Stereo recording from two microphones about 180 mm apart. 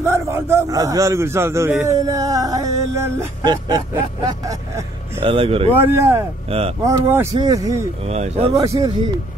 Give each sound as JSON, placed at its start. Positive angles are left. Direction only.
{"t": 0.0, "sound": "a man's voice", "side_deg": -15}
{"t": 1.7, "sound": "a sound", "side_deg": -15}
{"t": 3.9, "sound": "a man's voice", "side_deg": -20}
{"t": 5.2, "sound": "speech", "side_deg": -35}
{"t": 5.7, "sound": "a man's voice", "side_deg": -10}
{"t": 6.5, "sound": "speech", "side_deg": -30}
{"t": 6.9, "sound": "a man's voice", "side_deg": -10}
{"t": 7.3, "sound": "a sound", "side_deg": -20}
{"t": 8.1, "sound": "speech", "side_deg": -35}
{"t": 8.5, "sound": "a sound", "side_deg": -20}